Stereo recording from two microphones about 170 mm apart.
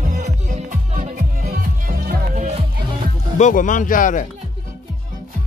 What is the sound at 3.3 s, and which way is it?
Speech, 45° left (ahead or behind).